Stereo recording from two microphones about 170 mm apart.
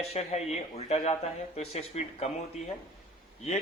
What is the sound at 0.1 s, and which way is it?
Speech, 40° left (ahead or behind).